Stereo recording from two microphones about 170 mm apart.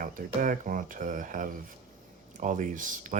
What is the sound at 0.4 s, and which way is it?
Speech, 50° right (ahead or behind).